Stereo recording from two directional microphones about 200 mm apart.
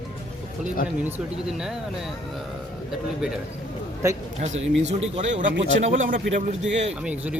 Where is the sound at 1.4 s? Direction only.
Centre (ahead or behind).